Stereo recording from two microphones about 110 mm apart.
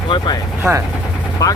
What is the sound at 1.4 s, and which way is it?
Speech, 35° left (ahead or behind).